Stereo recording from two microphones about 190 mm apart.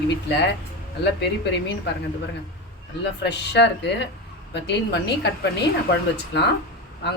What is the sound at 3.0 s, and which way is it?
Speech, 65° left (ahead or behind).